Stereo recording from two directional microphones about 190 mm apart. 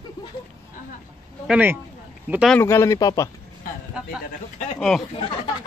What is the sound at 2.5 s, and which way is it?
Speech, 15° left (ahead or behind).